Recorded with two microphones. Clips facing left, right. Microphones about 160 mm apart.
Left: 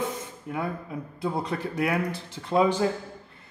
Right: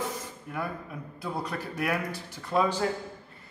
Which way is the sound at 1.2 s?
25° left (ahead or behind).